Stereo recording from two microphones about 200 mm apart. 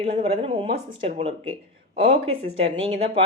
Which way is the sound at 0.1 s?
30° right (ahead or behind).